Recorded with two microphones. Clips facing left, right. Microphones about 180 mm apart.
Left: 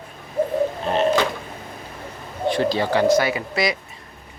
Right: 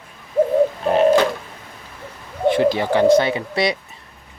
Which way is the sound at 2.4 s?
20° right (ahead or behind).